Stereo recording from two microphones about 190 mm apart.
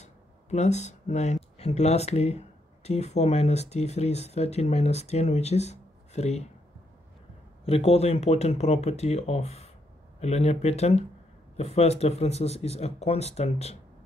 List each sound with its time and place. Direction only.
0.0 s speech: 35° left (ahead or behind)
7.6 s speech: 30° left (ahead or behind)